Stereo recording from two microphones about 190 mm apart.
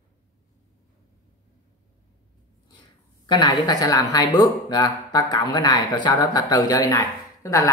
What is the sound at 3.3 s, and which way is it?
Speech, 25° left (ahead or behind).